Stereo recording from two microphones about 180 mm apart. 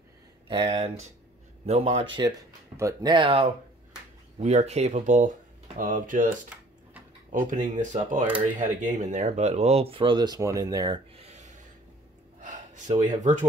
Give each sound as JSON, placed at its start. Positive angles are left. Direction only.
{"t": 0.5, "sound": "speech", "side_deg": -30}
{"t": 2.8, "sound": "speech", "side_deg": -20}
{"t": 7.3, "sound": "speech", "side_deg": -45}
{"t": 11.2, "sound": "a sound", "side_deg": -40}
{"t": 12.4, "sound": "gasp", "side_deg": -45}